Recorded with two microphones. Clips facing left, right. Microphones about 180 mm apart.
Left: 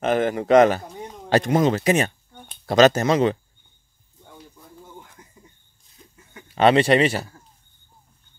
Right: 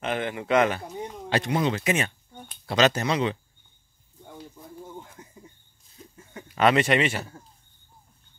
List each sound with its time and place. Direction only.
0.0 s speech: 40° left (ahead or behind)
6.5 s speech: 30° left (ahead or behind)